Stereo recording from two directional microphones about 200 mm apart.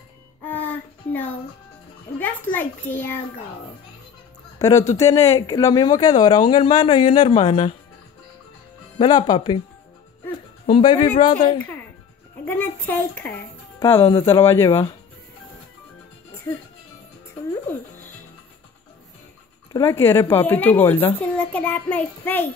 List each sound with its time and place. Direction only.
0.5 s child singing: 10° left (ahead or behind)
2.5 s a woman's voice: 10° left (ahead or behind)
4.6 s speech: 15° left (ahead or behind)
8.9 s speech: 20° left (ahead or behind)
10.7 s speech: 25° left (ahead or behind)
12.4 s a woman's voice: 10° left (ahead or behind)
17.6 s music: 10° left (ahead or behind)
19.7 s a woman's voice: 10° left (ahead or behind)